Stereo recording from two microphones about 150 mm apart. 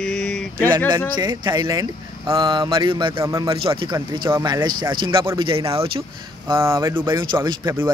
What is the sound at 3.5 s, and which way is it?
Speech, 35° right (ahead or behind).